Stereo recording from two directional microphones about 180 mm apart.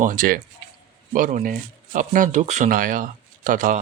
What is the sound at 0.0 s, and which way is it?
Speech, 50° right (ahead or behind).